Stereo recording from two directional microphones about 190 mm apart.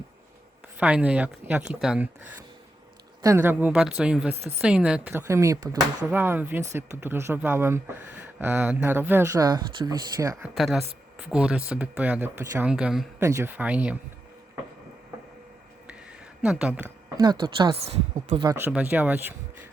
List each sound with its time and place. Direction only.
0.8 s speech: 5° right (ahead or behind)
3.2 s speech: 10° right (ahead or behind)
10.4 s speech: centre (ahead or behind)
13.1 s speech: 15° right (ahead or behind)
16.4 s speech: 5° right (ahead or behind)
17.2 s a woman's voice: 25° right (ahead or behind)